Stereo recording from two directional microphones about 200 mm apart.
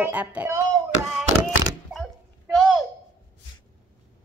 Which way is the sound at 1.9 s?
5° right (ahead or behind).